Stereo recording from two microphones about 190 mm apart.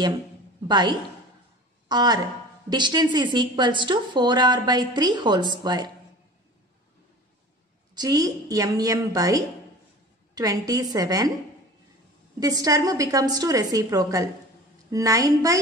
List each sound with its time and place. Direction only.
0.7 s a woman's voice: 25° right (ahead or behind)
7.9 s a woman's voice: 20° right (ahead or behind)
12.4 s a woman's voice: 20° right (ahead or behind)